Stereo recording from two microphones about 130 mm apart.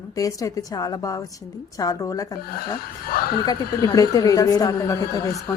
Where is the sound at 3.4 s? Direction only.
30° left (ahead or behind).